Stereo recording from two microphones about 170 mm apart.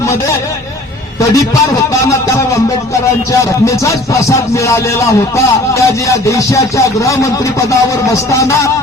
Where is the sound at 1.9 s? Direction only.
20° left (ahead or behind).